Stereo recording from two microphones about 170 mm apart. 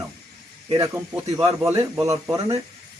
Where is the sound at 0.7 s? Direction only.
20° right (ahead or behind).